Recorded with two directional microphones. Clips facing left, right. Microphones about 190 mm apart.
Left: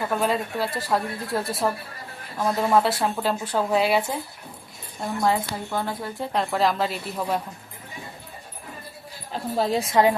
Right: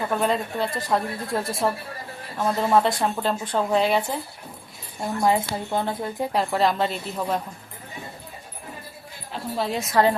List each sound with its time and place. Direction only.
0.1 s a woman's voice: 5° left (ahead or behind)
5.2 s speech: 20° right (ahead or behind)
6.3 s a woman's voice: centre (ahead or behind)
9.3 s a woman's voice: 35° left (ahead or behind)
9.9 s a woman's voice: 15° left (ahead or behind)